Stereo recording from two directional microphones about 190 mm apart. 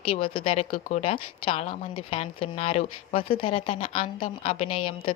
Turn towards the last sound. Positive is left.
turn(degrees=30)  # may be behind; listen again after turning